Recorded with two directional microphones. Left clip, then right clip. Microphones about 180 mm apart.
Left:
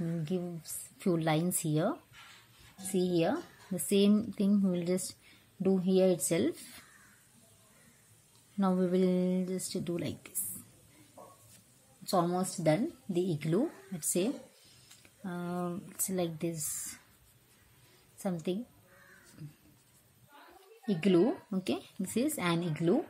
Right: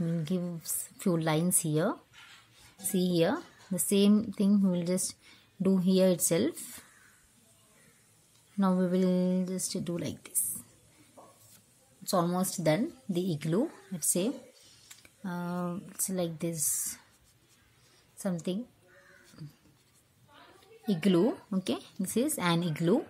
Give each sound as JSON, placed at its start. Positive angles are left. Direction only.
{"t": 0.2, "sound": "speech", "side_deg": -25}
{"t": 5.6, "sound": "speech", "side_deg": -30}
{"t": 8.5, "sound": "speech", "side_deg": -15}
{"t": 12.0, "sound": "speech", "side_deg": -15}
{"t": 18.2, "sound": "speech", "side_deg": -15}
{"t": 20.8, "sound": "speech", "side_deg": -20}